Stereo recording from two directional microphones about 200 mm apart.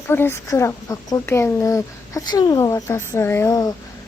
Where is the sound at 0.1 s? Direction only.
10° left (ahead or behind).